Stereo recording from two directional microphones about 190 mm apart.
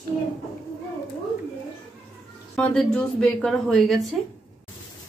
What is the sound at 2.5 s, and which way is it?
Speech, 5° left (ahead or behind).